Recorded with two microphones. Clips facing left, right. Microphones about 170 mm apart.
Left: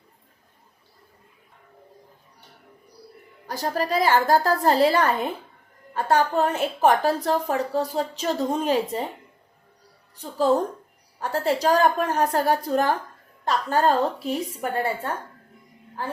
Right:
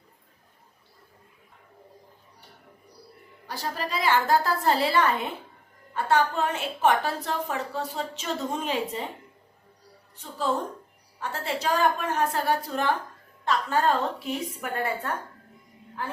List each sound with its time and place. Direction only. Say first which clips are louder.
3.4 s a woman's voice: left 6 dB; 45° left (ahead or behind)
10.3 s a woman's voice: left 7 dB; 40° left (ahead or behind)